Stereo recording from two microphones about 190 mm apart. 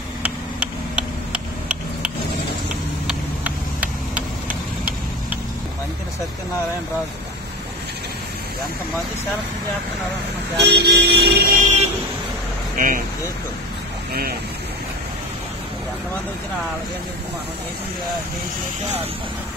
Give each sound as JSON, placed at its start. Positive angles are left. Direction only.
{"t": 1.3, "sound": "a sound", "side_deg": -5}
{"t": 4.1, "sound": "vehicle", "side_deg": -10}
{"t": 10.6, "sound": "music", "side_deg": -60}
{"t": 11.5, "sound": "vehicle", "side_deg": -40}
{"t": 12.7, "sound": "speech", "side_deg": -45}